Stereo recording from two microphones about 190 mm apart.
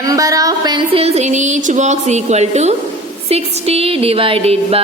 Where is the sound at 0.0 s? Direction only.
20° right (ahead or behind).